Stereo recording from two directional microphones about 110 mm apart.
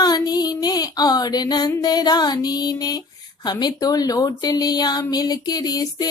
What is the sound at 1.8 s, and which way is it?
A woman's voice, 35° left (ahead or behind).